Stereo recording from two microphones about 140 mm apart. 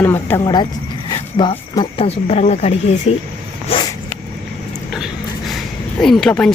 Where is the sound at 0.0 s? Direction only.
15° left (ahead or behind).